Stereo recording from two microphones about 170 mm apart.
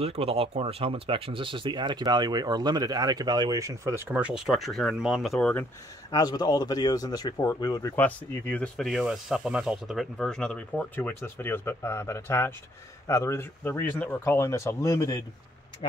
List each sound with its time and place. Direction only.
0.0 s speech: 35° right (ahead or behind); by 5.5 s centre (ahead or behind)
6.1 s speech: 25° left (ahead or behind)
7.9 s speech: 10° left (ahead or behind)